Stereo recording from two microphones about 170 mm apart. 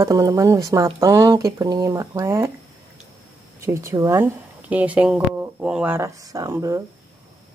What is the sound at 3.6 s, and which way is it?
Speech, 15° right (ahead or behind).